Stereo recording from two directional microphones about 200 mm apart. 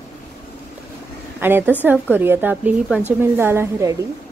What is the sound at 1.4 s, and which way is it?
Speech, 10° right (ahead or behind).